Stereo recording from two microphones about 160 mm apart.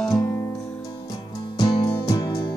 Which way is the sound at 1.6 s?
30° left (ahead or behind).